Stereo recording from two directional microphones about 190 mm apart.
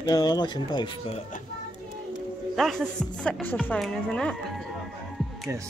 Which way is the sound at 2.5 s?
Centre (ahead or behind).